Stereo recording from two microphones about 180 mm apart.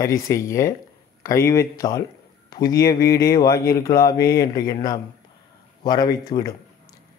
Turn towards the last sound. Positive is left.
turn(degrees=20)  # may be behind; listen again after turning